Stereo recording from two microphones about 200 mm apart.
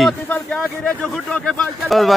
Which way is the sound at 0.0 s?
Centre (ahead or behind).